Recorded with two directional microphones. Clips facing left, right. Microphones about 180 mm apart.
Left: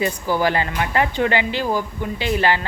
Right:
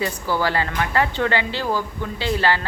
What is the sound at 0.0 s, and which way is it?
Speech, 15° left (ahead or behind).